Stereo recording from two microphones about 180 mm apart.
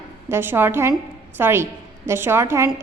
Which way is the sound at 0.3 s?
10° right (ahead or behind).